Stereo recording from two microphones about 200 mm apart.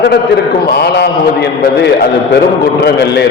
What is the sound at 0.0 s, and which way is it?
A man's voice, 55° left (ahead or behind).